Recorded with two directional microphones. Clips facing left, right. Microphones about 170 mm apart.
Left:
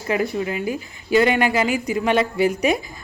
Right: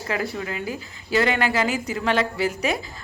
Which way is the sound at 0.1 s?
20° left (ahead or behind).